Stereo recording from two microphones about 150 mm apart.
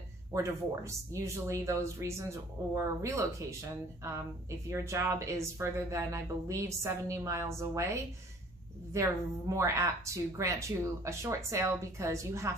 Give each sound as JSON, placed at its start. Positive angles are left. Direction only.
{"t": 0.3, "sound": "a woman's voice", "side_deg": -20}
{"t": 4.6, "sound": "a woman's voice", "side_deg": -20}